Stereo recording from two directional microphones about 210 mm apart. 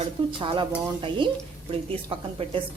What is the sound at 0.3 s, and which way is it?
Speech, 25° right (ahead or behind).